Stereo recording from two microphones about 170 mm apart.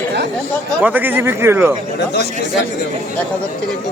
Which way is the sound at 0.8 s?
10° right (ahead or behind).